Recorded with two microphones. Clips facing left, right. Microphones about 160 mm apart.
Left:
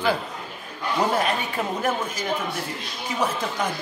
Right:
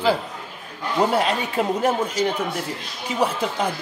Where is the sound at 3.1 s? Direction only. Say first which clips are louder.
Right 3 dB; 35° right (ahead or behind).